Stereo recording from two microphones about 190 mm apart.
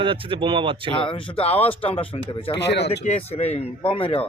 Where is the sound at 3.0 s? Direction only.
35° left (ahead or behind).